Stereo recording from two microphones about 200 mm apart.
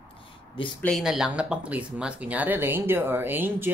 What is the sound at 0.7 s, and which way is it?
Speech, centre (ahead or behind).